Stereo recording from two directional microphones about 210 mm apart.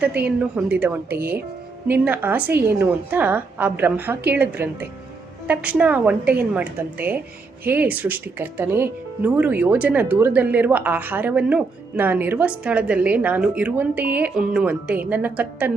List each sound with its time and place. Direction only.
0.0 s speech: 5° right (ahead or behind)